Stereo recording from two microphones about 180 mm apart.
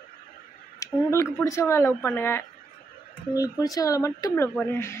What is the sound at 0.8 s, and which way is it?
Speech, 15° left (ahead or behind).